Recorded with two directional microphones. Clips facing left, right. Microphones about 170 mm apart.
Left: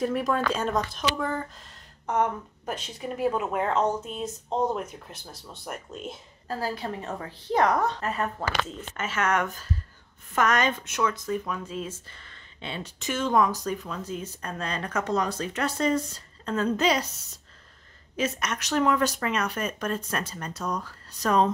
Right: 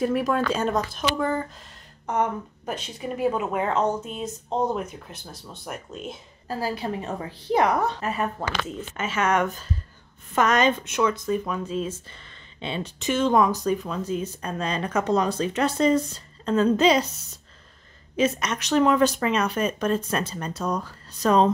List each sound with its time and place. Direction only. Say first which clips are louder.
0.0 s a woman's voice: right 3 dB; 5° right (ahead or behind); by 17.1 s 25° right (ahead or behind)
18.1 s speech: right 5 dB; 20° right (ahead or behind)